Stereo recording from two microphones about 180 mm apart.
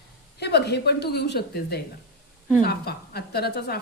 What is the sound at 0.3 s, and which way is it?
A woman's voice, 65° left (ahead or behind).